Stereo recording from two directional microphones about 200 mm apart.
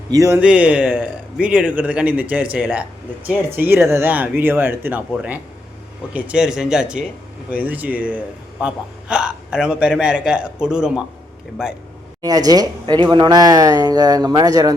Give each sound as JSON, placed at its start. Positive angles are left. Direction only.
{"t": 0.1, "sound": "a man's voice", "side_deg": -15}
{"t": 12.2, "sound": "speech", "side_deg": -20}